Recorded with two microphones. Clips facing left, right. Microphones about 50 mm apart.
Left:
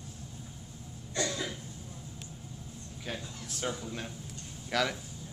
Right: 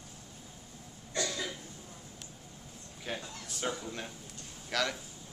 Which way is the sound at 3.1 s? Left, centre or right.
Centre.